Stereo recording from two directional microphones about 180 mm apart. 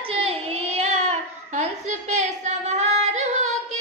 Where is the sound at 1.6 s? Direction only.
40° right (ahead or behind).